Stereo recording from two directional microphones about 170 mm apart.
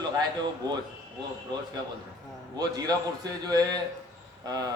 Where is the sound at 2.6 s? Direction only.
25° right (ahead or behind).